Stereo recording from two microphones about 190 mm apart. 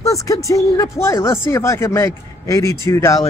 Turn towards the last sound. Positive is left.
turn(degrees=15)  # may be behind; listen again after turning